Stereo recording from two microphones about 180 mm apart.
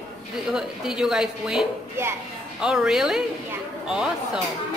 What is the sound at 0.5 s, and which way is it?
A woman's voice, 5° right (ahead or behind).